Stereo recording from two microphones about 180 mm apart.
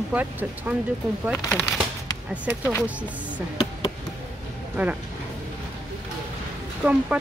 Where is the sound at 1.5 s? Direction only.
15° left (ahead or behind).